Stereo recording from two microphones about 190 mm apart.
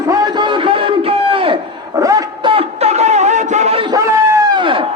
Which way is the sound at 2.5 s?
35° right (ahead or behind).